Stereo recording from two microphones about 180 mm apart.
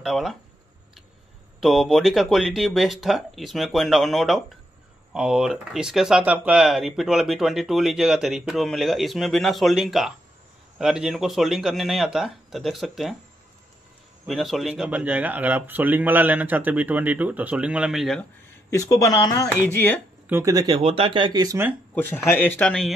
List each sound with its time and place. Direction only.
0.0 s speech: centre (ahead or behind)
1.6 s speech: centre (ahead or behind)
14.2 s a man's voice: centre (ahead or behind)
18.7 s speech: 15° left (ahead or behind)
20.2 s speech: 15° right (ahead or behind)
20.8 s speech: 30° right (ahead or behind); by 21.7 s 15° right (ahead or behind)
21.9 s speech: 10° left (ahead or behind)